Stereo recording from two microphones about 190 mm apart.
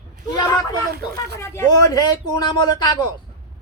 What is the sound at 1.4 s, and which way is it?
Speech, 15° left (ahead or behind).